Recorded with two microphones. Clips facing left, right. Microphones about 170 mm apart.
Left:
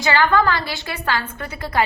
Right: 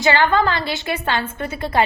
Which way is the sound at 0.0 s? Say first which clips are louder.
Right 1 dB; 20° right (ahead or behind).